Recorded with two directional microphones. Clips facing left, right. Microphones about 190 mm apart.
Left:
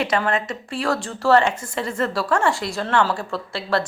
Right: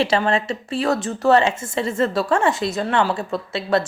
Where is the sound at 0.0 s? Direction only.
25° right (ahead or behind).